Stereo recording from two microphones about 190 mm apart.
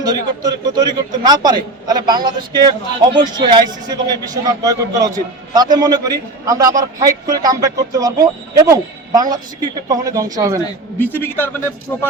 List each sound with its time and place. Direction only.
0.0 s a man's voice: 20° right (ahead or behind)
10.6 s a man's voice: 10° left (ahead or behind)